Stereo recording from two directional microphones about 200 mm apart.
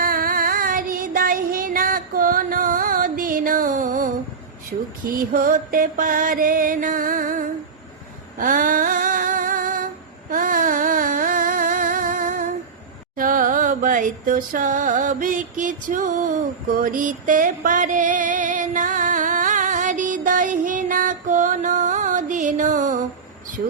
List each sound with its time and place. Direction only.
0.0 s child singing: 45° right (ahead or behind)
4.7 s speech: 40° right (ahead or behind)
5.0 s music: 45° right (ahead or behind)
8.4 s female singing: 45° right (ahead or behind)
10.3 s music: 45° right (ahead or behind)